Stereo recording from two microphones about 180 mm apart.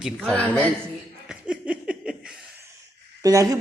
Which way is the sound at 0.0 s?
5° right (ahead or behind).